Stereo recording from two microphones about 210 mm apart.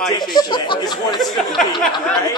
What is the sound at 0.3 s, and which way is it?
Speech, 20° left (ahead or behind).